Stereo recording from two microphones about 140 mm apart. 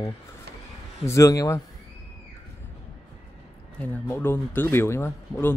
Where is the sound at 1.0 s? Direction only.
25° left (ahead or behind).